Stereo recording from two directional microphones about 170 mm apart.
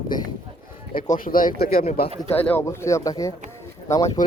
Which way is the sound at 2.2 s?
10° left (ahead or behind).